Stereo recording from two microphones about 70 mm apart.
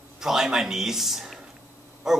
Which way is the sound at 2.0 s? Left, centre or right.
Centre.